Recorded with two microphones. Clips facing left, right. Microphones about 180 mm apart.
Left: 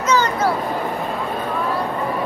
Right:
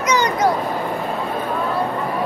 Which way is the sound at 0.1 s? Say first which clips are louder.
Right 1 dB; 15° right (ahead or behind).